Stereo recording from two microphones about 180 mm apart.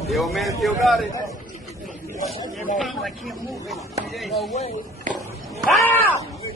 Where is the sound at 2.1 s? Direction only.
35° left (ahead or behind).